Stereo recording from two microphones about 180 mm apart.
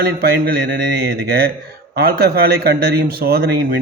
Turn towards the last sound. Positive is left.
turn(degrees=-60)  # may be behind; listen again after turning